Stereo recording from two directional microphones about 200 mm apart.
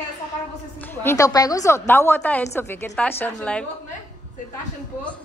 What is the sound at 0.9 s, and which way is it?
A woman's voice, 10° left (ahead or behind).